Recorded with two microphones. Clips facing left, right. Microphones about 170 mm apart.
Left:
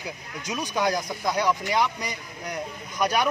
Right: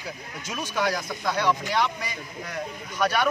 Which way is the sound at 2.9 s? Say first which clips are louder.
Even; 15° left (ahead or behind).